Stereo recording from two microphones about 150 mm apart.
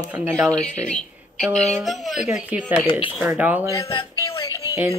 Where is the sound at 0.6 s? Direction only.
5° left (ahead or behind).